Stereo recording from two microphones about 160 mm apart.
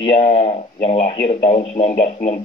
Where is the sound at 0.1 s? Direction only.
40° left (ahead or behind).